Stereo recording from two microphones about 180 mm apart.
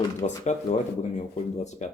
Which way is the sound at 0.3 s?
40° left (ahead or behind).